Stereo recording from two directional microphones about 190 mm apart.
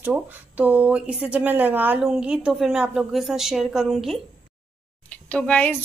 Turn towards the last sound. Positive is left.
turn(degrees=10)  # may be behind; listen again after turning